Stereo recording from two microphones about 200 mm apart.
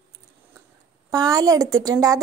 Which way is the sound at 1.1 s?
20° right (ahead or behind).